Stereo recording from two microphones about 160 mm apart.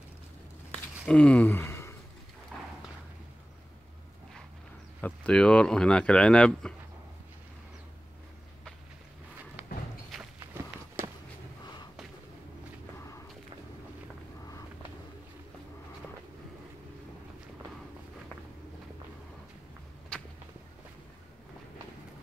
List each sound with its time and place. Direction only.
1.0 s a sound: 5° left (ahead or behind)
2.5 s horse: 5° left (ahead or behind)
5.0 s speech: 5° left (ahead or behind)
9.6 s thump: 10° right (ahead or behind)